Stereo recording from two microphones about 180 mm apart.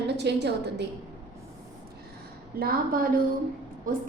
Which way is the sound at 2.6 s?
55° right (ahead or behind).